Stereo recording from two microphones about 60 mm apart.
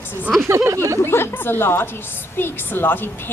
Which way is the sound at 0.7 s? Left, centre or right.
Right.